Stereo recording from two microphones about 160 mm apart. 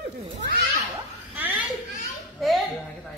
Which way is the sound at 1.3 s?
10° right (ahead or behind).